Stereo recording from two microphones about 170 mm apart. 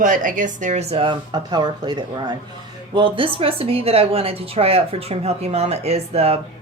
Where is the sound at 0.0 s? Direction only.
50° right (ahead or behind).